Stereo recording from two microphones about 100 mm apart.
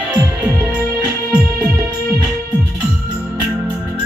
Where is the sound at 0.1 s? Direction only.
30° right (ahead or behind).